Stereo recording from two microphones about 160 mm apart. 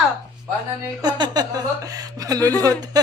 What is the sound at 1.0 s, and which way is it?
A woman's voice, 25° right (ahead or behind).